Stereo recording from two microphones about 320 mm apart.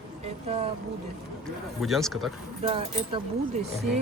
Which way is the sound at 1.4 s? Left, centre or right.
Centre.